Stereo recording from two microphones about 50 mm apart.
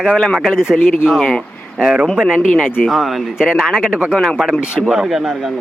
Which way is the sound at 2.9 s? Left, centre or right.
Centre.